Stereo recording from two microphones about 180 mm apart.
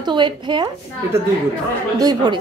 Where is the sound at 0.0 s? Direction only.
25° right (ahead or behind).